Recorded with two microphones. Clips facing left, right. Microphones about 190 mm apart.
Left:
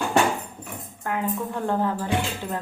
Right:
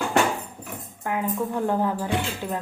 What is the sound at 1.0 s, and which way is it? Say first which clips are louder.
Tambourine: right 1 dB; 15° right (ahead or behind).